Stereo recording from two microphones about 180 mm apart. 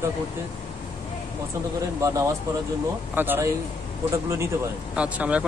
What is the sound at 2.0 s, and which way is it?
Speech, 15° right (ahead or behind).